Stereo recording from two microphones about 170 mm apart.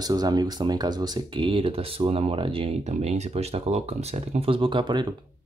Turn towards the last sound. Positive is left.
turn(degrees=-25)  # may be behind; listen again after turning